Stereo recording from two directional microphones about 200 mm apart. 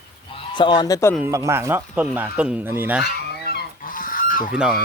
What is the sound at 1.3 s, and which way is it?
Speech, 15° right (ahead or behind).